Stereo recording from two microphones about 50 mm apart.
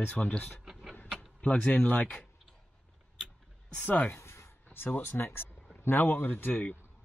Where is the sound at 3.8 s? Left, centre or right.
Left.